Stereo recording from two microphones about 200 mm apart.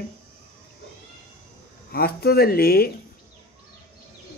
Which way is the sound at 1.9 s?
50° left (ahead or behind).